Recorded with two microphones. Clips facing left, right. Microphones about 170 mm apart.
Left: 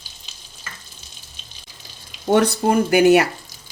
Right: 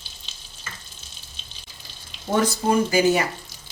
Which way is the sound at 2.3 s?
65° left (ahead or behind).